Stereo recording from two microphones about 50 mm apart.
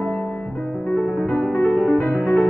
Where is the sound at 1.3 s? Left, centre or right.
Left.